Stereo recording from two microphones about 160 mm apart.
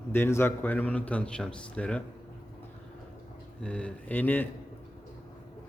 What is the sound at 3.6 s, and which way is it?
Speech, 5° left (ahead or behind).